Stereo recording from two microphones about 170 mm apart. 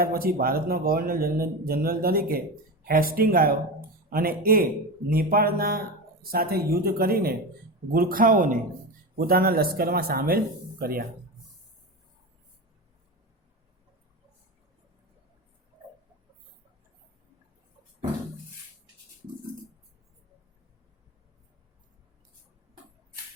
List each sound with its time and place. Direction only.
0.0 s a man's voice: 60° right (ahead or behind)